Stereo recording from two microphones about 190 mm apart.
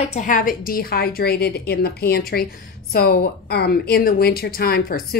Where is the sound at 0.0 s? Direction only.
40° left (ahead or behind).